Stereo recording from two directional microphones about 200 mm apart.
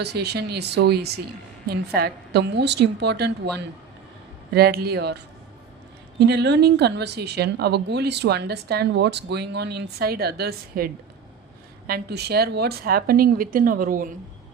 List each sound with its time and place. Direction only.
0.0 s speech: 55° right (ahead or behind)
4.5 s a woman's voice: 50° right (ahead or behind)
11.9 s a woman's voice: 50° right (ahead or behind)